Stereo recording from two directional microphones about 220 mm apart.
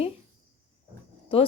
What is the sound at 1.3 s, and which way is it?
Speech, 25° left (ahead or behind).